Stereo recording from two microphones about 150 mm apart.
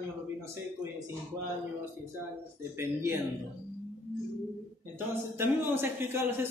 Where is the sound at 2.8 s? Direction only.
15° right (ahead or behind).